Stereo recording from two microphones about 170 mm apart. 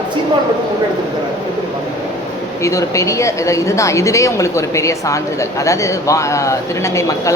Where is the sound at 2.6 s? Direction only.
20° left (ahead or behind).